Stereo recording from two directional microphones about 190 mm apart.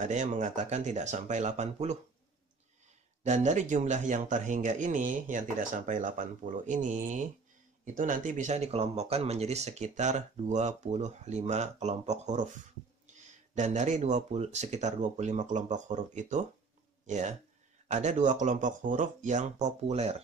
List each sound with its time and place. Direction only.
0.0 s speech: 40° right (ahead or behind)
3.3 s speech: 40° right (ahead or behind)